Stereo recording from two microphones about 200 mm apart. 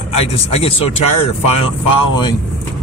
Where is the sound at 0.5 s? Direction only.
30° left (ahead or behind).